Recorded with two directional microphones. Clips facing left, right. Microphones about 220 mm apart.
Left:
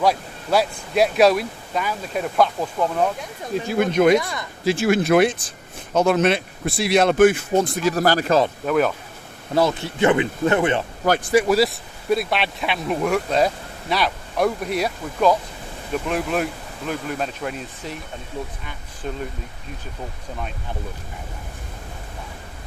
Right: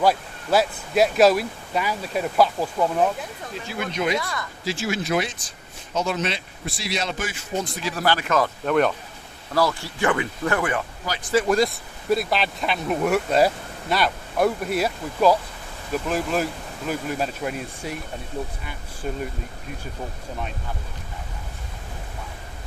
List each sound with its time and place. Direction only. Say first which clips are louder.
0.0 s speech: even; centre (ahead or behind)
3.7 s speech: left 9 dB; 50° left (ahead or behind)
4.2 s speech: left 1 dB; 20° left (ahead or behind)
4.6 s speech: left 9 dB; 55° left (ahead or behind); by 8.4 s 35° left (ahead or behind)
8.6 s speech: left 1 dB; 5° left (ahead or behind)
9.6 s speech: left 4 dB; 20° left (ahead or behind)
11.3 s speech: left 1 dB; 10° left (ahead or behind)
19.0 s speech: even; 5° right (ahead or behind)